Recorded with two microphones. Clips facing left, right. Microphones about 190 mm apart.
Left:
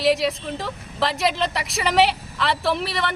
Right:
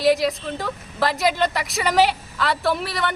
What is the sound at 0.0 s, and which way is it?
A woman's voice, centre (ahead or behind).